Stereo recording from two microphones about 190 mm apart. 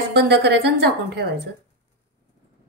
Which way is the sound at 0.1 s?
60° right (ahead or behind).